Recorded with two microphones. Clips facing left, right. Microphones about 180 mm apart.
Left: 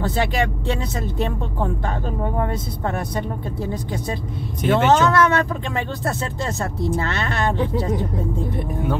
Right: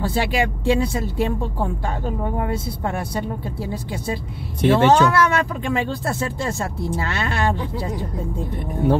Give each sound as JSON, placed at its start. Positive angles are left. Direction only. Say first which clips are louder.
{"t": 0.0, "sound": "speech", "louder": "even", "side_deg": -10}
{"t": 3.5, "sound": "speech", "louder": "left 2 dB", "side_deg": -10}
{"t": 4.6, "sound": "speech", "louder": "right 2 dB", "side_deg": -30}
{"t": 4.9, "sound": "speech", "louder": "even", "side_deg": -10}
{"t": 6.4, "sound": "speech", "louder": "left 1 dB", "side_deg": -10}